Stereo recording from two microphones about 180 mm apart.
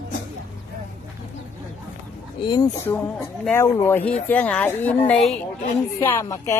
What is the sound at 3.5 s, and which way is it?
Speech, 15° left (ahead or behind).